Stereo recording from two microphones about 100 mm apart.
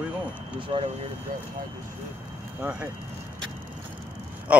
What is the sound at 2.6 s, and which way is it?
Speech, 15° right (ahead or behind).